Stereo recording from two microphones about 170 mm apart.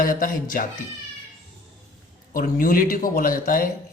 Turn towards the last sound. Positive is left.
turn(degrees=55)  # may be behind; listen again after turning